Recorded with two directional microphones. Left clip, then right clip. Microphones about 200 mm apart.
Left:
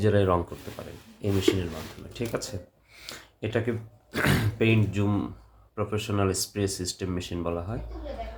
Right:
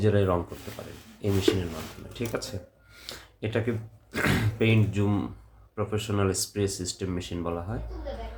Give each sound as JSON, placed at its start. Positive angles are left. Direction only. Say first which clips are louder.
{"t": 0.0, "sound": "speech", "louder": "left 1 dB", "side_deg": 15}